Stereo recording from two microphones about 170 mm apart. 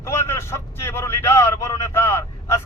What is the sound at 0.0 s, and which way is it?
A man's voice, 15° left (ahead or behind).